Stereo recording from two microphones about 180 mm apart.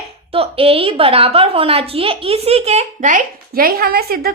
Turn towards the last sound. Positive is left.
turn(degrees=-60)  # may be behind; listen again after turning